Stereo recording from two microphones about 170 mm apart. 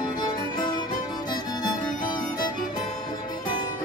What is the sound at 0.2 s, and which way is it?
Music, 25° left (ahead or behind).